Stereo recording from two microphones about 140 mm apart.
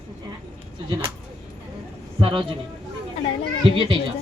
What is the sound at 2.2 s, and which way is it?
Speech, 40° right (ahead or behind).